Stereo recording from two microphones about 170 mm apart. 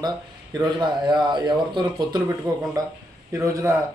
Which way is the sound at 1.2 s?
25° right (ahead or behind).